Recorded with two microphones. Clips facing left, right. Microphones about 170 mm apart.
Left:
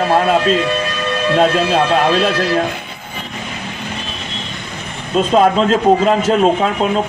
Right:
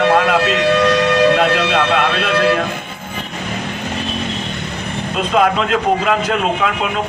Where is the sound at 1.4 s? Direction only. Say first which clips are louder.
Left 2 dB; 70° right (ahead or behind).